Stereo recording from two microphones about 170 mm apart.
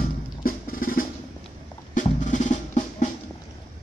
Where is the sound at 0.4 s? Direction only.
55° left (ahead or behind).